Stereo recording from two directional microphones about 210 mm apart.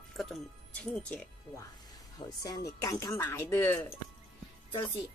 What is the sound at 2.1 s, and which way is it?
Speech, 15° left (ahead or behind).